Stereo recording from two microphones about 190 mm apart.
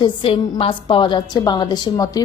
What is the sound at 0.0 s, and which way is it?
A woman's voice, 25° left (ahead or behind).